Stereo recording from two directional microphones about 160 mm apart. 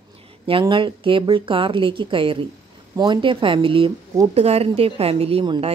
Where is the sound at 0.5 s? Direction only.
35° right (ahead or behind).